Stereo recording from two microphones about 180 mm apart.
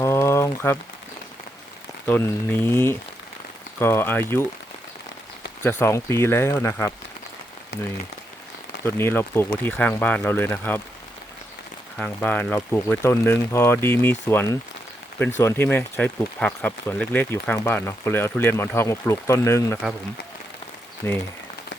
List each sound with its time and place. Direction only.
0.0 s a sound: 15° left (ahead or behind)
2.0 s speech: 10° left (ahead or behind)
5.6 s speech: 15° left (ahead or behind)
8.8 s speech: 15° left (ahead or behind)
11.9 s speech: 10° left (ahead or behind)
21.0 s speech: 15° left (ahead or behind)